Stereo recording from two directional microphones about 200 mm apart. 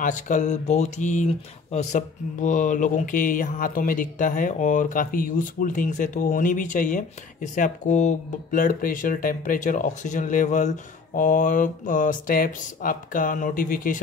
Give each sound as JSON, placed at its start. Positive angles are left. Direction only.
{"t": 0.0, "sound": "speech", "side_deg": 40}